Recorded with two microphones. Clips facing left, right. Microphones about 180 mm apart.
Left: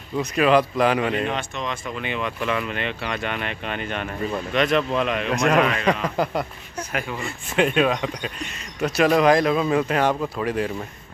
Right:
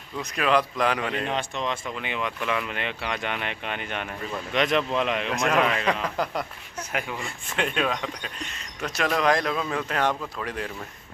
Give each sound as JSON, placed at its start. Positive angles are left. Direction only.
{"t": 0.2, "sound": "speech", "side_deg": 5}
{"t": 1.3, "sound": "speech", "side_deg": -30}
{"t": 2.0, "sound": "speech", "side_deg": -15}
{"t": 5.3, "sound": "speech", "side_deg": 0}
{"t": 6.9, "sound": "speech", "side_deg": -20}
{"t": 7.2, "sound": "speech", "side_deg": 5}